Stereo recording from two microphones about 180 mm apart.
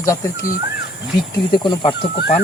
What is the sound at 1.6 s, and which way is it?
Speech, 25° left (ahead or behind).